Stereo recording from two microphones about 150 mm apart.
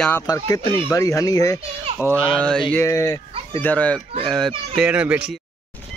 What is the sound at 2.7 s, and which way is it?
Speech, 20° left (ahead or behind).